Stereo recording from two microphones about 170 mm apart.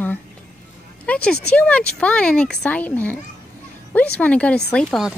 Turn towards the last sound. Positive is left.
turn(degrees=0)  # may be behind; listen again after turning